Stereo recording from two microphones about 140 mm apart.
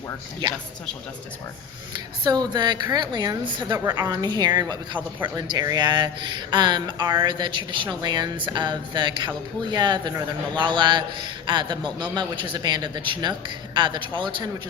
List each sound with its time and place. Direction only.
1.9 s a woman's voice: 30° right (ahead or behind)